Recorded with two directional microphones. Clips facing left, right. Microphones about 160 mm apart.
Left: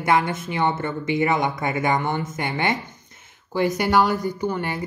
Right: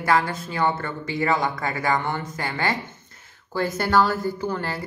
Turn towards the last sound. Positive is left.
turn(degrees=15)  # may be behind; listen again after turning